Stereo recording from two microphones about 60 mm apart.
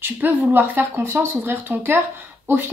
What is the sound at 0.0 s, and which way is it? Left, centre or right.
A woman's voice, right.